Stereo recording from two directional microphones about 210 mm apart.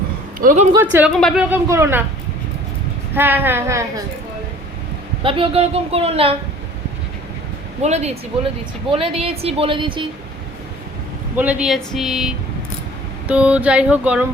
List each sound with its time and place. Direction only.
0.3 s speech: 40° right (ahead or behind)
1.1 s a sound: 5° left (ahead or behind)
1.5 s a woman's voice: 15° right (ahead or behind)
3.2 s a woman's voice: 10° right (ahead or behind)
5.2 s a woman's voice: 25° right (ahead or behind)
7.8 s a woman's voice: 30° right (ahead or behind)
11.3 s a sound: 5° right (ahead or behind)